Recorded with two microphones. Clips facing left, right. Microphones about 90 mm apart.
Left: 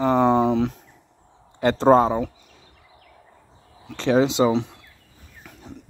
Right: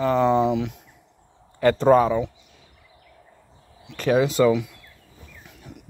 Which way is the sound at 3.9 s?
30° left (ahead or behind).